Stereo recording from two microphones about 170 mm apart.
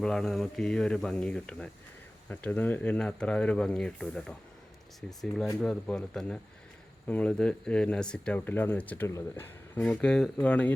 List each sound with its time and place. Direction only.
0.0 s speech: 5° left (ahead or behind)